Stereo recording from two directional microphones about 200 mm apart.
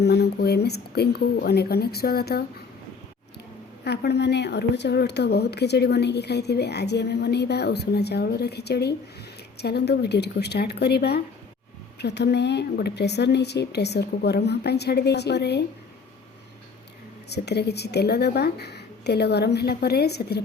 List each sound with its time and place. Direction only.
0.0 s speech: 55° left (ahead or behind)
3.8 s a woman's voice: 55° left (ahead or behind)
17.2 s a woman's voice: 55° left (ahead or behind)